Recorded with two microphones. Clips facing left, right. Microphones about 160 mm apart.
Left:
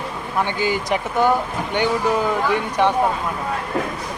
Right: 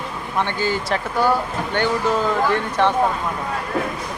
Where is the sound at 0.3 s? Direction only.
15° left (ahead or behind).